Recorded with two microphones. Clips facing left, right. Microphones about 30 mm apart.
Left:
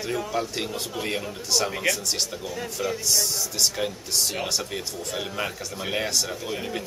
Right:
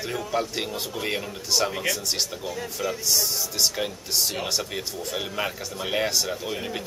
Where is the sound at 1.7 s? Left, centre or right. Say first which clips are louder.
Left 1 dB; centre.